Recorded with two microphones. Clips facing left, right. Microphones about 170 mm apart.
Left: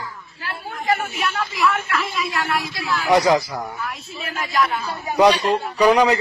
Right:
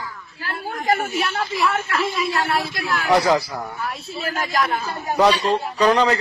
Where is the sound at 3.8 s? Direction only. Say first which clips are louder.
Right 3 dB; 40° right (ahead or behind).